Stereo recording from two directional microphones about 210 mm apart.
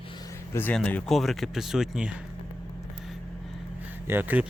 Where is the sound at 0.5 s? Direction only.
5° left (ahead or behind).